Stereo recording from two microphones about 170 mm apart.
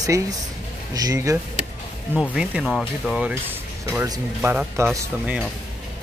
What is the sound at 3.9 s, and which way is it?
Speech, 15° right (ahead or behind).